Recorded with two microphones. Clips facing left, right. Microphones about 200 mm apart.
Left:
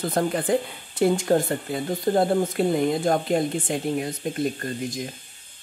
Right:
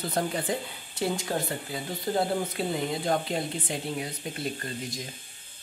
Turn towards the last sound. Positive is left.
turn(degrees=50)  # may be behind; listen again after turning